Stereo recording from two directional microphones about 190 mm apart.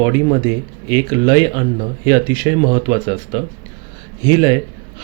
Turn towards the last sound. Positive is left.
turn(degrees=-20)  # may be behind; listen again after turning